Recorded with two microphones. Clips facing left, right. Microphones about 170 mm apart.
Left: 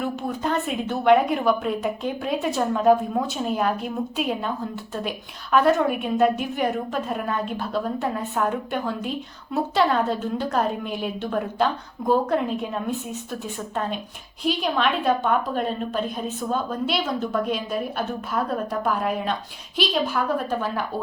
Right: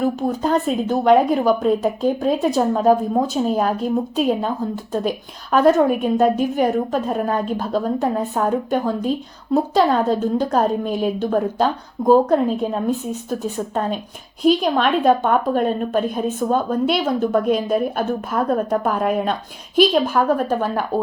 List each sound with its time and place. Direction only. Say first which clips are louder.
0.0 s a woman's voice: right 6 dB; 40° right (ahead or behind)
14.4 s a woman's voice: right 7 dB; 45° right (ahead or behind)